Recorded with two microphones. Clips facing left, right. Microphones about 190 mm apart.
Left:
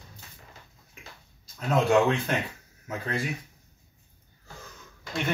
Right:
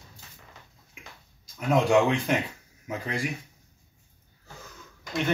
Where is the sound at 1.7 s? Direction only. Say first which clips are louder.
Right 1 dB; 15° right (ahead or behind).